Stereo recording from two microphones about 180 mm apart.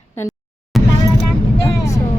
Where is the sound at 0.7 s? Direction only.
Centre (ahead or behind).